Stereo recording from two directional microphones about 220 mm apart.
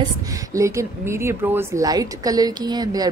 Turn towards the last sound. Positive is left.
turn(degrees=-15)  # may be behind; listen again after turning